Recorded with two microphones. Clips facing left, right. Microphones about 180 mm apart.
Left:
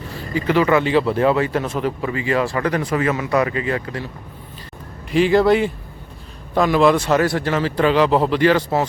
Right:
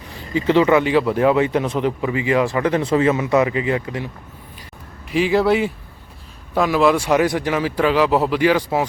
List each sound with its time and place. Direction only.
0.1 s speech: 20° right (ahead or behind)
5.1 s speech: 5° right (ahead or behind)